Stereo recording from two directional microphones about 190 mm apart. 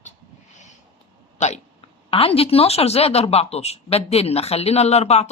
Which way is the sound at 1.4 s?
35° left (ahead or behind).